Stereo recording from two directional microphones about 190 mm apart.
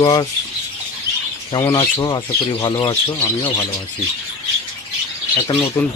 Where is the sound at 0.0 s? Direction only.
20° left (ahead or behind).